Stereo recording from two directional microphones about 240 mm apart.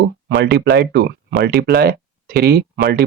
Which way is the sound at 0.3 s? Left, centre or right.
Right.